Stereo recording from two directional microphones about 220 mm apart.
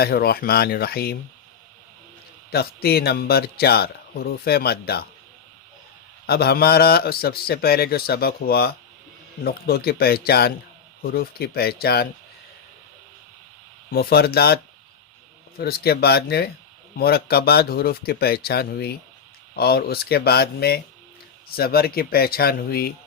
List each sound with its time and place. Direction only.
0.0 s speech: 45° left (ahead or behind)
2.5 s speech: 45° left (ahead or behind)
6.2 s speech: 45° left (ahead or behind)
13.9 s speech: 45° left (ahead or behind)